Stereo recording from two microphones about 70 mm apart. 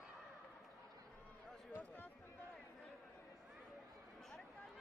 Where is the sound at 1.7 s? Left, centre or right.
Left.